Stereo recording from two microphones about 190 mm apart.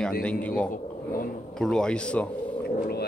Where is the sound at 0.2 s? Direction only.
5° left (ahead or behind).